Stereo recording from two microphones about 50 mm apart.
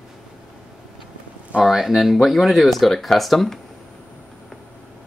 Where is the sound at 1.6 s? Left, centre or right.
Centre.